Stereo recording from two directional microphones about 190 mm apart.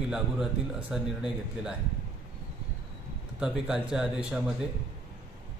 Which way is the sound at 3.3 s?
5° right (ahead or behind).